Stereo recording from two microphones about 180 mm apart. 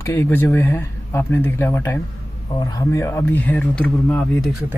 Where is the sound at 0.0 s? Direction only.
15° left (ahead or behind).